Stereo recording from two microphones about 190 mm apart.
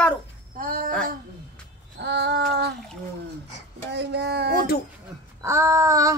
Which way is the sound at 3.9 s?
60° right (ahead or behind).